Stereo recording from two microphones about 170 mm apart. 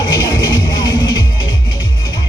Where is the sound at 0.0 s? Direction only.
25° left (ahead or behind).